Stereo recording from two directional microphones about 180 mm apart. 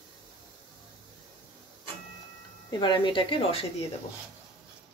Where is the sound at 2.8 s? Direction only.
25° left (ahead or behind).